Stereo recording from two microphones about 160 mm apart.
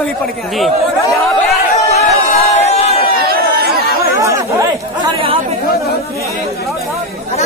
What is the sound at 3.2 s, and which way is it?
Chatter, 75° right (ahead or behind).